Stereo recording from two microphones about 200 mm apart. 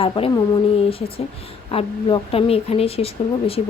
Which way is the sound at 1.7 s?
30° left (ahead or behind).